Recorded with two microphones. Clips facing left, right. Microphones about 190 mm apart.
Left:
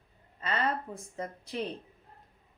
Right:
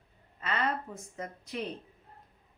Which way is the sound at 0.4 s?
30° left (ahead or behind).